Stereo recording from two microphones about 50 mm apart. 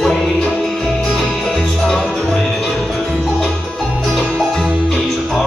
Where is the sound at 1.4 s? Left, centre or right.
Left.